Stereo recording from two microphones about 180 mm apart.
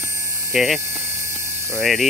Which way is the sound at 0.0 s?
15° right (ahead or behind).